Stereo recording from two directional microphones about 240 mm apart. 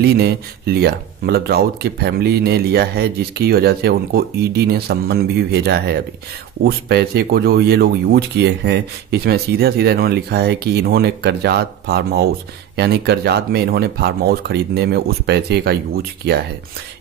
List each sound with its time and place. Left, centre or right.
0.0 s speech: right